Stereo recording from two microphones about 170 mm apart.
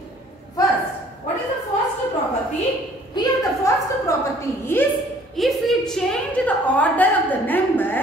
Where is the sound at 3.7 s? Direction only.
15° left (ahead or behind).